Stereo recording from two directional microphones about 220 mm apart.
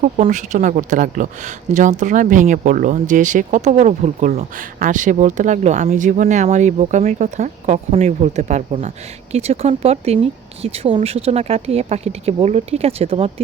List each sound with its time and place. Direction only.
0.0 s speech: 35° right (ahead or behind)